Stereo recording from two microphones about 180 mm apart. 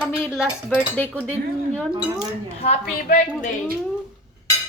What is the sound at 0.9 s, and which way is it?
Speech, 10° left (ahead or behind).